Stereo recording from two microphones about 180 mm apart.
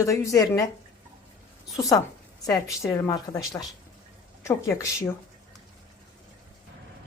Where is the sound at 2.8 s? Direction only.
15° left (ahead or behind).